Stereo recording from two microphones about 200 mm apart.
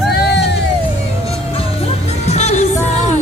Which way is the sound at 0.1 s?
55° left (ahead or behind).